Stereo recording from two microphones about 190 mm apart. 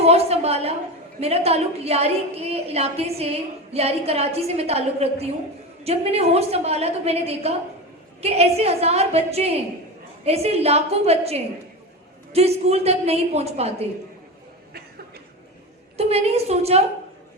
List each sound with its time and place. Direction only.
0.0 s a woman's voice: 35° right (ahead or behind)
16.0 s a woman's voice: 35° right (ahead or behind)